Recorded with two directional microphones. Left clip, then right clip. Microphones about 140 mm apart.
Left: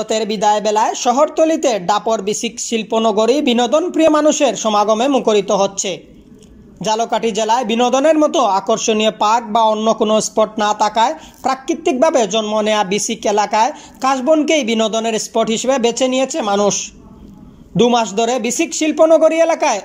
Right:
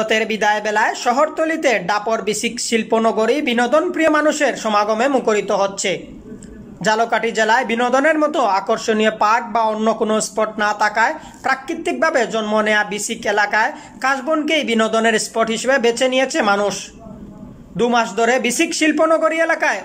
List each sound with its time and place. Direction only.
0.0 s speech: 25° left (ahead or behind)